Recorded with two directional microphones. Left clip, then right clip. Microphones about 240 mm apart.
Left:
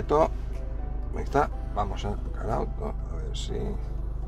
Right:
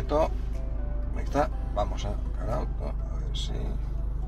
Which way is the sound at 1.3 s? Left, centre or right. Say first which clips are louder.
Left 2 dB; left.